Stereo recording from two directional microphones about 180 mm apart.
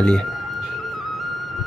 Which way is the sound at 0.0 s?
5° left (ahead or behind).